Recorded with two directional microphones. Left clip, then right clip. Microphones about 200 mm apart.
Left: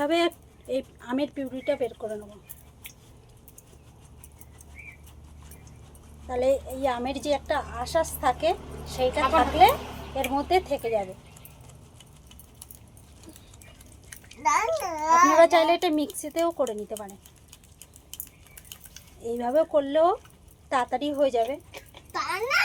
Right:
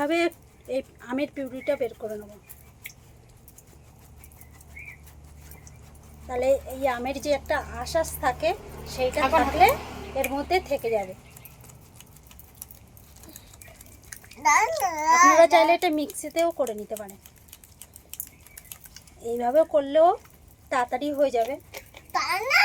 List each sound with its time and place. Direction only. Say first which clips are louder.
0.0 s a woman's voice: even; 5° right (ahead or behind)
6.2 s a woman's voice: right 1 dB; 5° right (ahead or behind)
14.4 s a child's voice: right 3 dB; 30° right (ahead or behind)
15.4 s a woman's voice: right 1 dB; centre (ahead or behind)
18.9 s a woman's voice: right 2 dB; centre (ahead or behind)
22.1 s babbling: right 3 dB; 25° right (ahead or behind)